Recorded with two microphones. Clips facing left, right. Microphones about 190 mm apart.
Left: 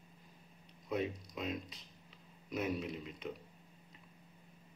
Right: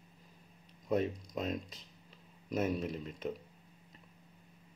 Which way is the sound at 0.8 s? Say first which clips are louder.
Right 5 dB; 45° right (ahead or behind).